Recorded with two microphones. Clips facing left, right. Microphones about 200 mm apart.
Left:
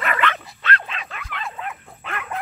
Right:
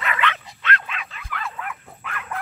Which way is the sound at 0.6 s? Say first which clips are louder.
Left 1 dB; 35° left (ahead or behind).